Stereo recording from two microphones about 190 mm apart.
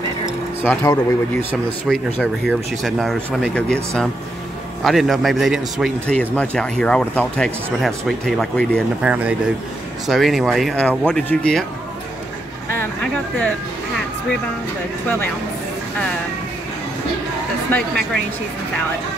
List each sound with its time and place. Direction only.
0.6 s speech: 15° left (ahead or behind)
1.9 s a man's voice: centre (ahead or behind)
17.7 s a woman's voice: 55° right (ahead or behind)